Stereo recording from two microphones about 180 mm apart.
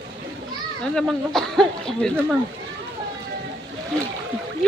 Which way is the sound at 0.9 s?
Centre (ahead or behind).